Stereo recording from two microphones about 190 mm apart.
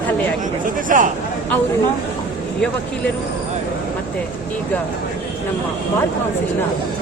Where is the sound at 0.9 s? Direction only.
45° right (ahead or behind).